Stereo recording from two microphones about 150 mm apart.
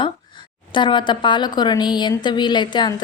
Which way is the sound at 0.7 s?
30° left (ahead or behind).